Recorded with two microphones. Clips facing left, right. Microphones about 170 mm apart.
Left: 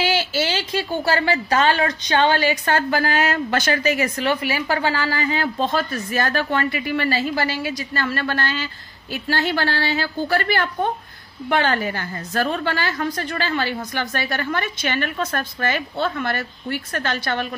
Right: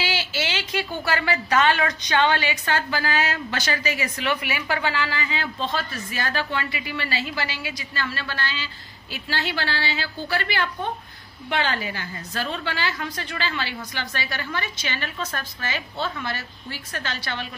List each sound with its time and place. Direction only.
0.0 s a woman's voice: 45° left (ahead or behind)
4.3 s a woman's voice: 35° left (ahead or behind); by 17.5 s 50° left (ahead or behind)